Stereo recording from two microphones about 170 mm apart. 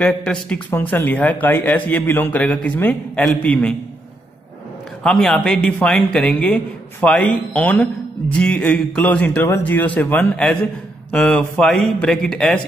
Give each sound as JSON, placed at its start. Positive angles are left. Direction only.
{"t": 0.0, "sound": "a man's voice", "side_deg": 5}
{"t": 5.0, "sound": "a man's voice", "side_deg": 5}